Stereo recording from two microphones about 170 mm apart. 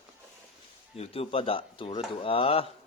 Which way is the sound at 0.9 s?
35° left (ahead or behind).